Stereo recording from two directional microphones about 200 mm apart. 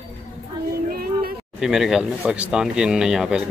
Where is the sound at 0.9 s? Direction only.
50° right (ahead or behind).